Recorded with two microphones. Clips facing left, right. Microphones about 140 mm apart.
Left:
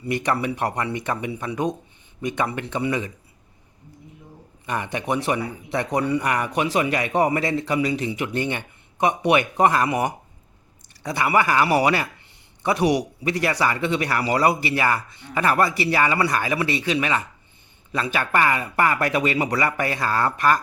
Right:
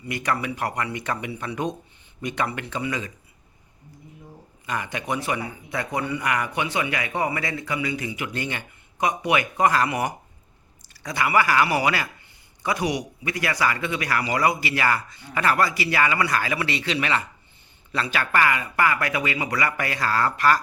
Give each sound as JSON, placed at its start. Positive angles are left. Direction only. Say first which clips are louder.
{"t": 0.0, "sound": "speech", "louder": "left 3 dB", "side_deg": 35}
{"t": 4.7, "sound": "a man's voice", "louder": "left 3 dB", "side_deg": 25}